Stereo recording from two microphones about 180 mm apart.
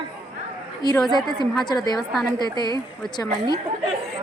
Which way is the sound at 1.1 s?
25° left (ahead or behind).